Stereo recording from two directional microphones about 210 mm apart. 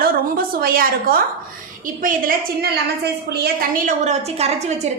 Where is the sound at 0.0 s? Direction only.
45° right (ahead or behind).